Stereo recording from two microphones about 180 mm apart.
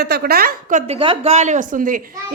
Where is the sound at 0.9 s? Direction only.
30° right (ahead or behind); by 2.0 s 50° right (ahead or behind).